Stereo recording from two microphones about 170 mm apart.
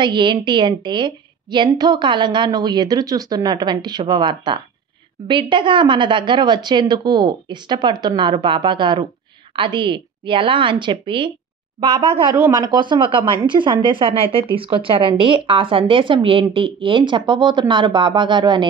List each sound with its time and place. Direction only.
0.0 s a woman's voice: 25° right (ahead or behind)